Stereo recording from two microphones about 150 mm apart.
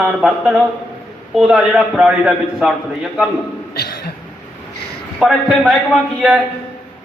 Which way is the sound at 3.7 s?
90° left.